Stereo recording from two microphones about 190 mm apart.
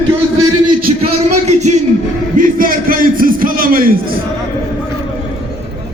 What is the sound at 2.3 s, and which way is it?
A man's voice, 45° right (ahead or behind).